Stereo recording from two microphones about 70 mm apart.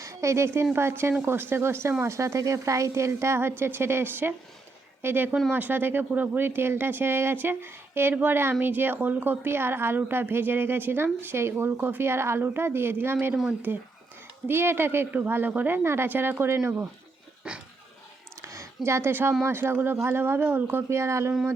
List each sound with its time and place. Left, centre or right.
0.0 s a woman's voice: right
17.5 s dog: centre
18.4 s a sound: right
18.9 s a woman's voice: right